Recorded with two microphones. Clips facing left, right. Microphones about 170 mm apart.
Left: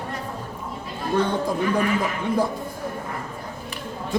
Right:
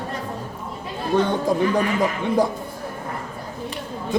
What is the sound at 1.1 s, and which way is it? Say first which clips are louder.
Speech: right 2 dB; 20° right (ahead or behind).